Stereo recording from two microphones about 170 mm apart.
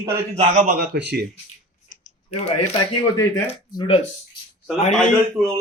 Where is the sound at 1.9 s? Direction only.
40° left (ahead or behind).